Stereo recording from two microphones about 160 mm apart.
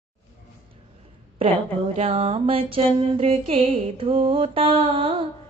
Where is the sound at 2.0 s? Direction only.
35° right (ahead or behind).